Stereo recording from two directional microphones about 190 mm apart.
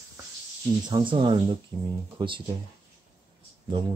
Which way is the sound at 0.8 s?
25° right (ahead or behind).